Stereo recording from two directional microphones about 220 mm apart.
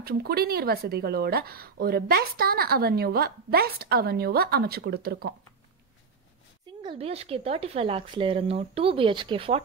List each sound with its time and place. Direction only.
0.0 s speech: 45° right (ahead or behind)
6.8 s speech: 25° right (ahead or behind)